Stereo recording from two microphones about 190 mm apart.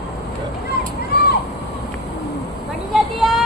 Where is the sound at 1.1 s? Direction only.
55° left (ahead or behind).